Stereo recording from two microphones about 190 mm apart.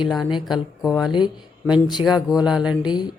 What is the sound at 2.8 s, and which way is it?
Speech, 25° left (ahead or behind).